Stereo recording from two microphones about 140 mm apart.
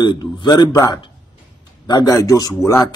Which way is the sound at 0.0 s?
35° left (ahead or behind).